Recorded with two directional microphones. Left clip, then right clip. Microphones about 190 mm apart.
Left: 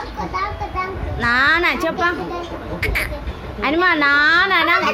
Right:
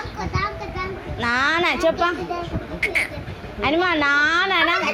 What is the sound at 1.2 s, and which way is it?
A woman's voice, centre (ahead or behind).